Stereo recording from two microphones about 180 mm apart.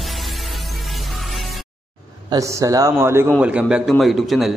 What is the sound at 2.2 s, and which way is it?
A man's voice, 15° right (ahead or behind).